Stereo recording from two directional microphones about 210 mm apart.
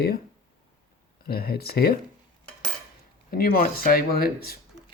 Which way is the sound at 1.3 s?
45° left (ahead or behind).